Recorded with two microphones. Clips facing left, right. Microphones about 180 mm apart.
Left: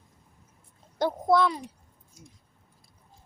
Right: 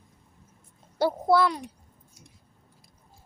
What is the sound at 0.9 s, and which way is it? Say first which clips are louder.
Speech: right 1 dB; 5° right (ahead or behind).